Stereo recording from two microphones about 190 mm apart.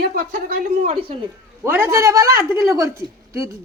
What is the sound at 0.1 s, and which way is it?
Speech, 50° right (ahead or behind).